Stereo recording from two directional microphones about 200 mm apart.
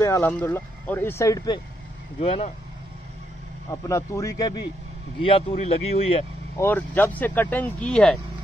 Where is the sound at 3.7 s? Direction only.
15° left (ahead or behind).